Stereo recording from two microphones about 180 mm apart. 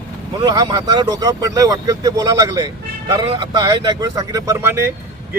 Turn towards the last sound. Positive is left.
turn(degrees=-15)  # may be behind; listen again after turning